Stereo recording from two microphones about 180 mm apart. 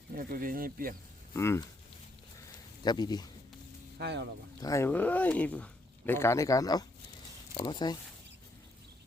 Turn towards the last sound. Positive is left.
turn(degrees=25)  # may be behind; listen again after turning